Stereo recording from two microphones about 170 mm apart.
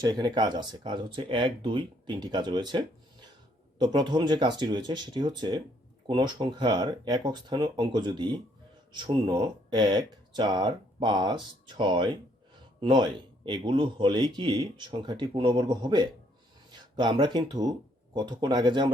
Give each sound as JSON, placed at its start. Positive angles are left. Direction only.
{"t": 0.0, "sound": "speech", "side_deg": -25}